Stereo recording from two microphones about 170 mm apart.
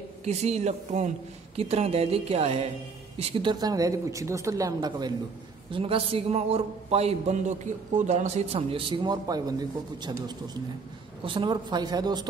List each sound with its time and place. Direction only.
0.2 s a man's voice: 40° right (ahead or behind)